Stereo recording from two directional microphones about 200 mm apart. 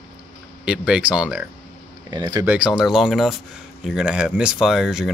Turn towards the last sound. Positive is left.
turn(degrees=0)  # may be behind; listen again after turning